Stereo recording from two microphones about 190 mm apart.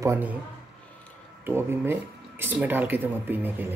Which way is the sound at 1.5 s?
10° right (ahead or behind).